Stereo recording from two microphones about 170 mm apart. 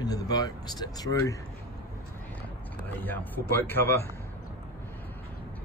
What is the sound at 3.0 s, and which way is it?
Speech, 10° left (ahead or behind).